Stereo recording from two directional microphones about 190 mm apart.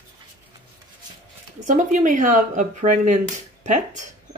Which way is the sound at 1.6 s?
40° right (ahead or behind).